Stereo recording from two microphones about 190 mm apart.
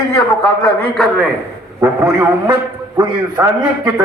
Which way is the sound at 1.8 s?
15° right (ahead or behind).